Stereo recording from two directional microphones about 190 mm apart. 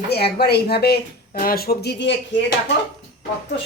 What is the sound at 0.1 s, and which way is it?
Speech, 60° left (ahead or behind).